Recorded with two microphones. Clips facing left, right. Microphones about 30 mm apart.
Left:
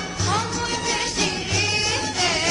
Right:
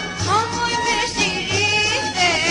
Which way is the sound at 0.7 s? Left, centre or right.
Right.